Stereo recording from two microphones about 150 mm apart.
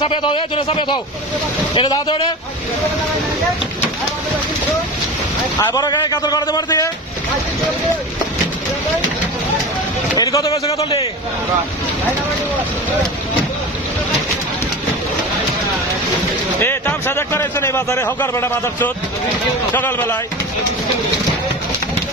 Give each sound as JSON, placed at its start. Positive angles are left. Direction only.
{"t": 0.0, "sound": "a man's voice", "side_deg": 35}
{"t": 5.6, "sound": "a man's voice", "side_deg": 25}
{"t": 10.1, "sound": "a man's voice", "side_deg": 25}
{"t": 10.7, "sound": "speech", "side_deg": 40}
{"t": 16.5, "sound": "a man's voice", "side_deg": 15}